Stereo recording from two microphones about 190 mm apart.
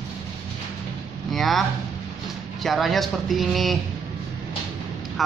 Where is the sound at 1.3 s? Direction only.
Centre (ahead or behind).